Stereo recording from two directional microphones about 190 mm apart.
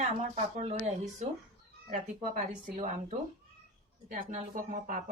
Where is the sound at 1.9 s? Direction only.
40° right (ahead or behind).